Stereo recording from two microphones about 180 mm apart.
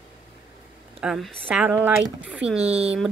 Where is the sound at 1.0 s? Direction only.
5° right (ahead or behind).